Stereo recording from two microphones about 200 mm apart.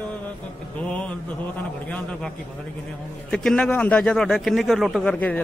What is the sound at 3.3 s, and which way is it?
Speech, 5° left (ahead or behind).